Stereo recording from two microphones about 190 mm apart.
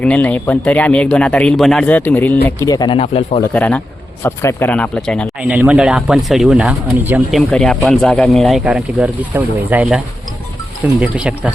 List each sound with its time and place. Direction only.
0.0 s speech: 5° left (ahead or behind); by 3.4 s 30° left (ahead or behind)
3.5 s speech: 5° left (ahead or behind); by 10.0 s 10° right (ahead or behind)
11.0 s speech: 5° right (ahead or behind)